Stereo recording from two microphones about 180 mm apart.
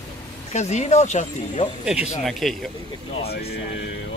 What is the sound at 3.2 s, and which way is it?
Speech, 60° left (ahead or behind).